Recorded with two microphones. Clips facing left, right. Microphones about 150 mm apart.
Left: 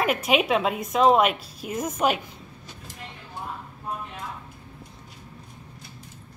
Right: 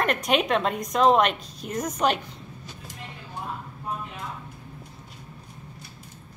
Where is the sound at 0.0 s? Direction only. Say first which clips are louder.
Left 1 dB; 5° left (ahead or behind).